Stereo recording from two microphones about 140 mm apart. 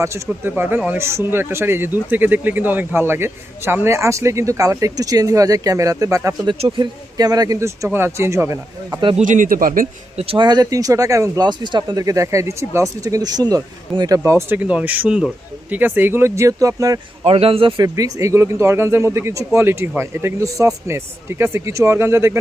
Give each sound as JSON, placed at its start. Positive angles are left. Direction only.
{"t": 0.0, "sound": "speech", "side_deg": -20}
{"t": 9.1, "sound": "speech", "side_deg": -65}
{"t": 10.2, "sound": "speech", "side_deg": -40}
{"t": 14.3, "sound": "speech", "side_deg": -15}
{"t": 17.2, "sound": "a man's voice", "side_deg": -45}
{"t": 17.8, "sound": "speech", "side_deg": -25}